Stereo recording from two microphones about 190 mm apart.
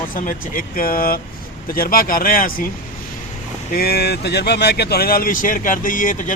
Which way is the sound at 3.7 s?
55° left (ahead or behind).